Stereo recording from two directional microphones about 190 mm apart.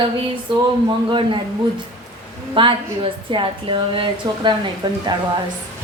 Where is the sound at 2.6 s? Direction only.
25° right (ahead or behind).